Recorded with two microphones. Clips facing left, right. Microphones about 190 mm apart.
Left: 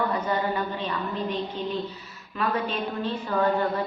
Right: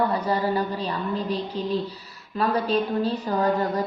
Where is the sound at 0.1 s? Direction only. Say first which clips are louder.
Right 3 dB; 35° right (ahead or behind).